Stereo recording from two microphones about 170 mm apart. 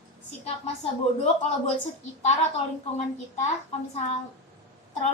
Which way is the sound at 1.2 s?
40° left (ahead or behind).